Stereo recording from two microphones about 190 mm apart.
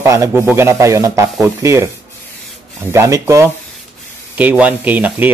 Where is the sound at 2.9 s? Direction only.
15° right (ahead or behind).